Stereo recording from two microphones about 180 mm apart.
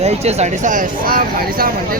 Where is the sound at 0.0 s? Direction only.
35° right (ahead or behind).